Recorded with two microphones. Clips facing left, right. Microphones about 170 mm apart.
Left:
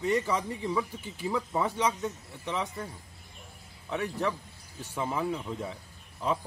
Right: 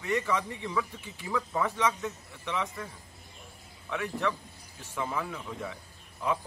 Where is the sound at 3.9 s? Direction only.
35° left (ahead or behind).